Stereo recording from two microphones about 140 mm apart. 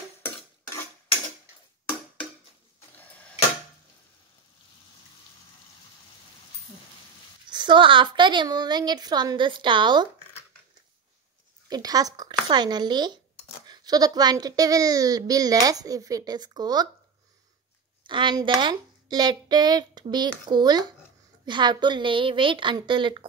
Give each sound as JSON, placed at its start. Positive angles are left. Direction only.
{"t": 7.4, "sound": "a woman's voice", "side_deg": -35}
{"t": 11.7, "sound": "a woman's voice", "side_deg": -25}
{"t": 18.0, "sound": "a woman's voice", "side_deg": -35}